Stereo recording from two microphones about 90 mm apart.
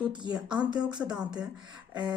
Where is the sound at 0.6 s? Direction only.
15° right (ahead or behind).